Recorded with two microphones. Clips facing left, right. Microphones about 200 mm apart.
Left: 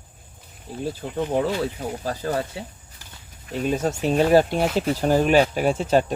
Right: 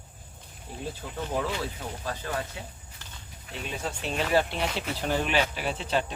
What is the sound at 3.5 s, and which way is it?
Speech, 45° left (ahead or behind).